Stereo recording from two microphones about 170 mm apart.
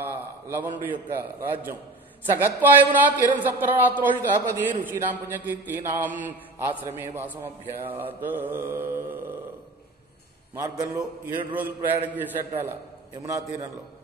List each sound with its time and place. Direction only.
0.0 s a man's voice: 15° right (ahead or behind)
10.5 s a man's voice: 20° right (ahead or behind)